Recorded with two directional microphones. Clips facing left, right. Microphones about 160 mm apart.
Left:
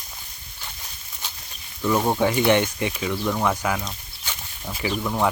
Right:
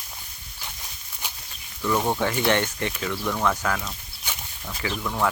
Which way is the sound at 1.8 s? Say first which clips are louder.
Left 3 dB; 15° left (ahead or behind).